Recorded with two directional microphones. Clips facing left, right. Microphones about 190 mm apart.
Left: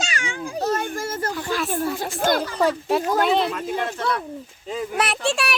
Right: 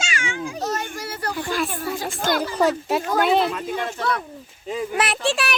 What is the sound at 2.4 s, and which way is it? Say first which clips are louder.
A child's voice: right 1 dB; 5° right (ahead or behind).